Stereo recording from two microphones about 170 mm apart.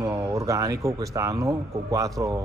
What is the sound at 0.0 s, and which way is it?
A man's voice, 20° right (ahead or behind).